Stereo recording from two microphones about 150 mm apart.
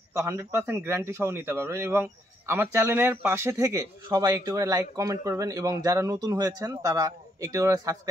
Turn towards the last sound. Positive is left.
turn(degrees=-20)  # may be behind; listen again after turning